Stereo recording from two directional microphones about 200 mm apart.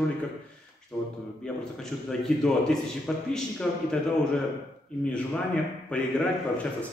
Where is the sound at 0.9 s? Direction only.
5° left (ahead or behind).